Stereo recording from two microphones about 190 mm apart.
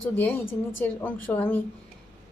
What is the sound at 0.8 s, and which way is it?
Speech, 10° left (ahead or behind).